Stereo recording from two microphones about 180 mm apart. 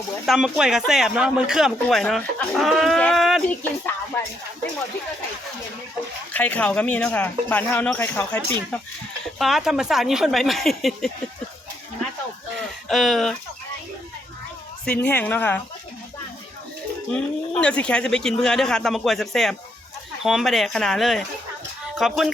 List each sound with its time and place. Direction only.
0.3 s speech: 5° right (ahead or behind)
6.3 s speech: 10° left (ahead or behind)
9.4 s speech: centre (ahead or behind)
12.5 s speech: centre (ahead or behind)
15.0 s speech: 10° left (ahead or behind)
17.1 s speech: 5° left (ahead or behind)